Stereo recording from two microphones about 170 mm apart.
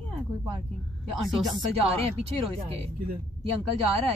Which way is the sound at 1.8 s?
35° right (ahead or behind).